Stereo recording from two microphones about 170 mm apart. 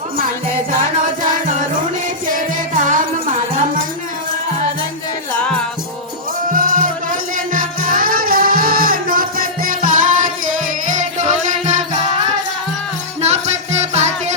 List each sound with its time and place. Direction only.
2.3 s music: 50° right (ahead or behind)
5.3 s music: 5° left (ahead or behind)
6.5 s music: 55° right (ahead or behind)
13.2 s music: 40° right (ahead or behind)